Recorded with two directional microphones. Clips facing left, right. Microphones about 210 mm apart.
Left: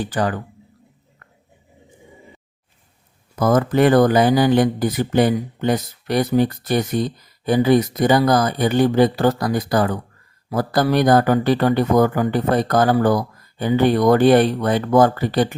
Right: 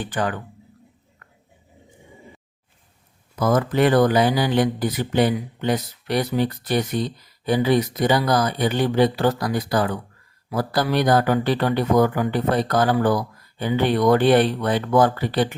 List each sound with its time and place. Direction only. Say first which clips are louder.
0.0 s speech: left 3 dB; 40° left (ahead or behind)
3.3 s speech: left 3 dB; 45° left (ahead or behind)